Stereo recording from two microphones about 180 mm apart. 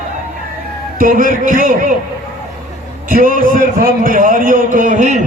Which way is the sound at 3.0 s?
50° right (ahead or behind).